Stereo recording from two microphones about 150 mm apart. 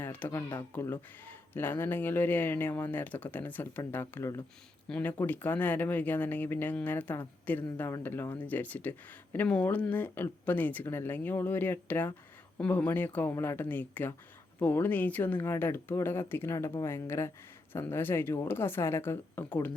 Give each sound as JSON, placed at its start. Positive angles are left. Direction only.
{"t": 0.0, "sound": "speech", "side_deg": 10}